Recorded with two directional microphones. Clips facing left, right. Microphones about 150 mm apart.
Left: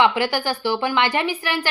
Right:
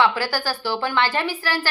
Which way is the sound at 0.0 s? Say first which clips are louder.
Left 2 dB; 20° left (ahead or behind).